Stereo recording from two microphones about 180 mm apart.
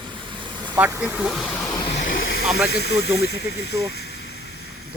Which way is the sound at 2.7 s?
65° left (ahead or behind).